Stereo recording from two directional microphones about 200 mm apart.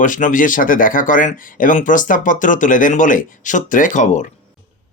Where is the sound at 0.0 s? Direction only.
40° left (ahead or behind).